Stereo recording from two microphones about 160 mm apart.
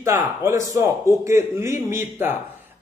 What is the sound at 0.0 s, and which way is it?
Speech, 15° right (ahead or behind).